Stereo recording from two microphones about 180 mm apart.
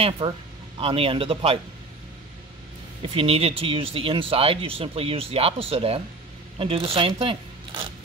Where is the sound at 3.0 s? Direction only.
30° right (ahead or behind).